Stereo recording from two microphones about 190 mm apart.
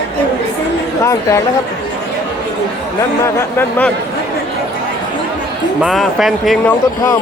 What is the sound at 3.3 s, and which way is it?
Speech, 10° left (ahead or behind).